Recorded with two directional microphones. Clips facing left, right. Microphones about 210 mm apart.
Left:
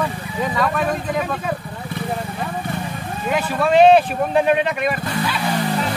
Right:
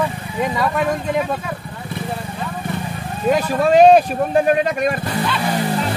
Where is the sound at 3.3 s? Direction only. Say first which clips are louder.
Right 2 dB; 40° right (ahead or behind).